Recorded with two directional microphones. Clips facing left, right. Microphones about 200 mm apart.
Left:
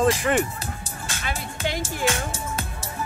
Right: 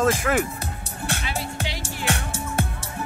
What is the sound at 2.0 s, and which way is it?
Music, 65° right (ahead or behind).